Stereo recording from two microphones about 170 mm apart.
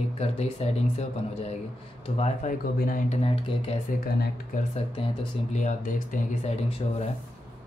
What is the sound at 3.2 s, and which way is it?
Speech, 35° left (ahead or behind).